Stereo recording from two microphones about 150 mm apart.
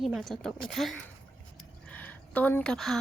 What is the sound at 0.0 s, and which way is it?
A woman's voice, centre (ahead or behind).